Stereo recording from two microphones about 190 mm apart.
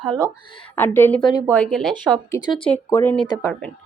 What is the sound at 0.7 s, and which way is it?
Speech, 10° left (ahead or behind).